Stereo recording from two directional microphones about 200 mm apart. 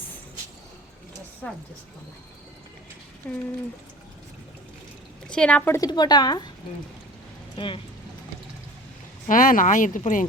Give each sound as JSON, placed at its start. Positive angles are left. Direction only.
{"t": 3.2, "sound": "speech", "side_deg": 10}
{"t": 5.3, "sound": "a woman's voice", "side_deg": 5}
{"t": 7.5, "sound": "speech", "side_deg": 25}
{"t": 9.2, "sound": "speech", "side_deg": 40}